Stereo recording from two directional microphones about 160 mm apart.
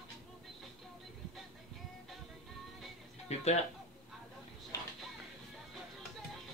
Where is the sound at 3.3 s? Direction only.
45° left (ahead or behind).